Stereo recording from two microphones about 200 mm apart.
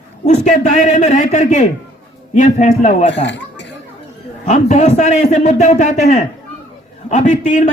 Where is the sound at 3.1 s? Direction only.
65° left (ahead or behind).